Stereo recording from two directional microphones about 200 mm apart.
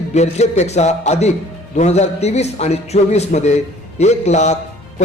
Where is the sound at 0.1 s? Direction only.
35° left (ahead or behind).